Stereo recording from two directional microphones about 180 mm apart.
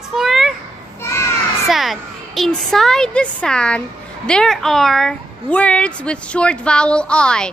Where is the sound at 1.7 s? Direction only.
Centre (ahead or behind).